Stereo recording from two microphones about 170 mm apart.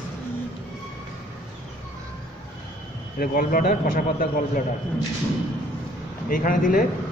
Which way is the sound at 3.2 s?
55° left (ahead or behind).